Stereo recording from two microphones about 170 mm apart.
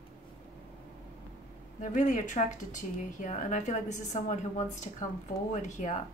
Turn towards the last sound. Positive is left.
turn(degrees=45)  # may be behind; listen again after turning